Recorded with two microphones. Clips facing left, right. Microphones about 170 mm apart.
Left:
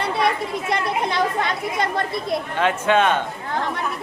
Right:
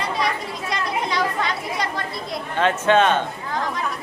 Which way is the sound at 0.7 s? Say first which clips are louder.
Left 1 dB; 55° left (ahead or behind).